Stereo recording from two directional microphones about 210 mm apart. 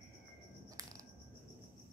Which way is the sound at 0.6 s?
15° right (ahead or behind).